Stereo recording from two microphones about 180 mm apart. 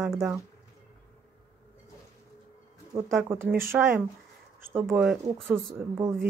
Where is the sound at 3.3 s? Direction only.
15° right (ahead or behind).